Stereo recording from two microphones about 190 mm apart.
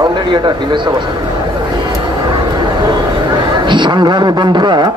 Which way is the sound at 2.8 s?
20° right (ahead or behind).